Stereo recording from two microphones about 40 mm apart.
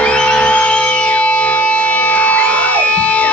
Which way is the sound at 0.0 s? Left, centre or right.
Left.